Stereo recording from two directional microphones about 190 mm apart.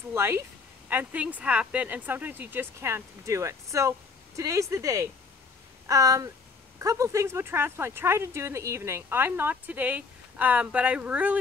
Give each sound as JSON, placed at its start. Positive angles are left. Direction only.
{"t": 0.1, "sound": "speech", "side_deg": -15}